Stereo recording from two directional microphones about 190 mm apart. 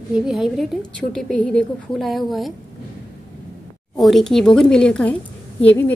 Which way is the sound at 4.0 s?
Centre (ahead or behind).